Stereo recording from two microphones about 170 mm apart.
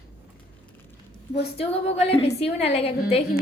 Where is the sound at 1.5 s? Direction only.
35° left (ahead or behind).